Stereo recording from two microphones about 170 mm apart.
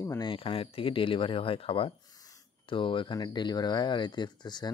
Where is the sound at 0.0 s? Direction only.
25° left (ahead or behind).